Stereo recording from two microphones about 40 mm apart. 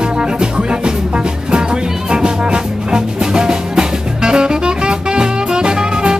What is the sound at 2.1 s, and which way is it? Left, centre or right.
Music, centre.